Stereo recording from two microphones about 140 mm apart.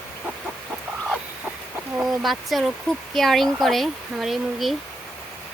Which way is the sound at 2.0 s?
Centre (ahead or behind).